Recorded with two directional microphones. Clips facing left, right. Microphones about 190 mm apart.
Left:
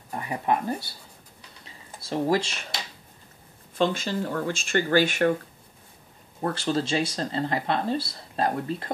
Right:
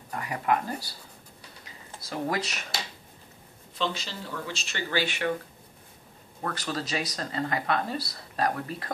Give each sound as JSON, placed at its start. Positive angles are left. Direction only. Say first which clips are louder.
{"t": 0.1, "sound": "speech", "louder": "left 1 dB", "side_deg": 30}
{"t": 1.6, "sound": "a sound", "louder": "left 1 dB", "side_deg": 30}
{"t": 3.7, "sound": "speech", "louder": "left 7 dB", "side_deg": 50}
{"t": 6.4, "sound": "speech", "louder": "left 6 dB", "side_deg": 30}